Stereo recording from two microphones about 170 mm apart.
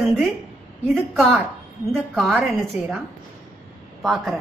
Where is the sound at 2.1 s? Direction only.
Centre (ahead or behind).